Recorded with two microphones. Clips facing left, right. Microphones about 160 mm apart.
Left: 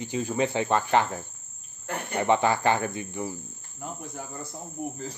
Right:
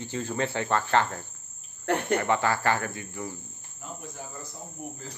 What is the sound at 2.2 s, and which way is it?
Speech, 20° left (ahead or behind).